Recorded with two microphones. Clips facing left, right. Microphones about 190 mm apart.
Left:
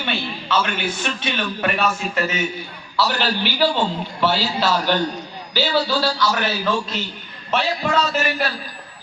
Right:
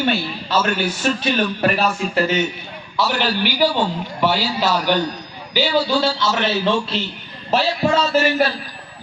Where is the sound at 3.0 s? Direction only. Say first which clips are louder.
Right 1 dB; 15° right (ahead or behind); by 7.7 s 35° right (ahead or behind).